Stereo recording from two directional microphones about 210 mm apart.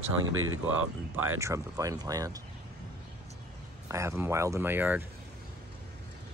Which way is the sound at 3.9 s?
15° right (ahead or behind).